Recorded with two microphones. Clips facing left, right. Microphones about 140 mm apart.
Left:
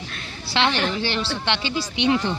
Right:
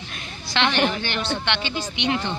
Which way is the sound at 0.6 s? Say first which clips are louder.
Even; 30° left (ahead or behind).